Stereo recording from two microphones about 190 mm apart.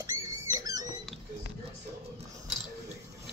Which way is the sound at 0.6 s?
20° right (ahead or behind).